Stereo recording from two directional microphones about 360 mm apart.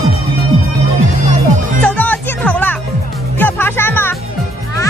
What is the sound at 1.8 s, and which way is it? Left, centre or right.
Music, centre.